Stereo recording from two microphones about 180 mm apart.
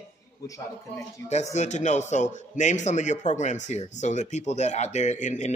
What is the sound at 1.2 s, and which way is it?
A man's voice, 40° left (ahead or behind).